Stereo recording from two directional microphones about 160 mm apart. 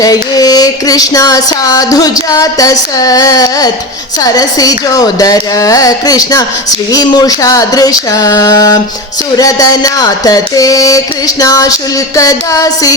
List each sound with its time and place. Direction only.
0.0 s speech: 25° left (ahead or behind)